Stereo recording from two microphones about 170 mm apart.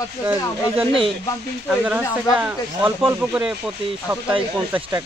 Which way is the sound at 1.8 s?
10° right (ahead or behind).